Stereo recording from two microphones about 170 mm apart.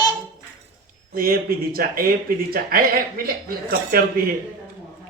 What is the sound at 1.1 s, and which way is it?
Speech, 60° right (ahead or behind).